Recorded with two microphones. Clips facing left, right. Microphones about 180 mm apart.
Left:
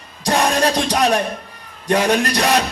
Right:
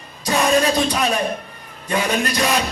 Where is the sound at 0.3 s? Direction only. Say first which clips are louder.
Even; 70° left (ahead or behind).